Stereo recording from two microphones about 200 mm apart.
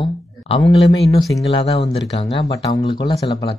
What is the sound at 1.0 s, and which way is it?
Speech, centre (ahead or behind).